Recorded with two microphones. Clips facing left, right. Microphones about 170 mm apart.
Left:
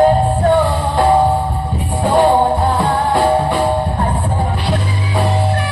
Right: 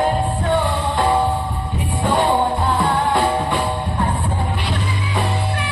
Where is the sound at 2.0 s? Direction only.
40° left (ahead or behind).